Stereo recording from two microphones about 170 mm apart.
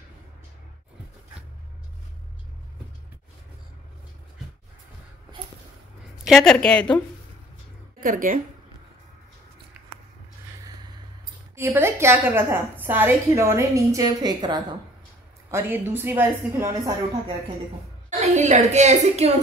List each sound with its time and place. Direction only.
6.2 s speech: centre (ahead or behind)
8.0 s a woman's voice: 55° right (ahead or behind)
9.8 s a sound: 10° right (ahead or behind)
11.5 s a woman's voice: 15° right (ahead or behind)
15.5 s a woman's voice: 15° right (ahead or behind)
18.2 s a woman's voice: 45° right (ahead or behind)